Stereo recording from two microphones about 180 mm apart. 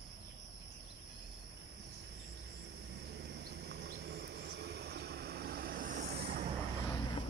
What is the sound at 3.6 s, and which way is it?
Vehicle, 65° right (ahead or behind).